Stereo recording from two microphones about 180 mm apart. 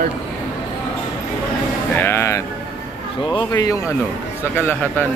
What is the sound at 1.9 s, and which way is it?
Speech, 15° left (ahead or behind).